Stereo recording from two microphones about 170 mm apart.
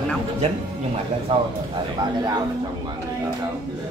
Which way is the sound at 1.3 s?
35° right (ahead or behind).